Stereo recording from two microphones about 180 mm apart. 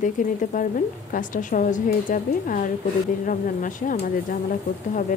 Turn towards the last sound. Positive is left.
turn(degrees=50)  # may be behind; listen again after turning